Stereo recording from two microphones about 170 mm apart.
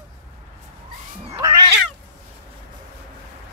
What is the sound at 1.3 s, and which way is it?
Cat, 20° right (ahead or behind).